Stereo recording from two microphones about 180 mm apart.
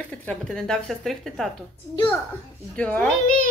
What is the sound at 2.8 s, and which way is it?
Speech, 5° left (ahead or behind).